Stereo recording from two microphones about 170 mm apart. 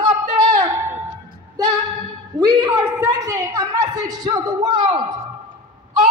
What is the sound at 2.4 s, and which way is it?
A woman's voice, 20° right (ahead or behind).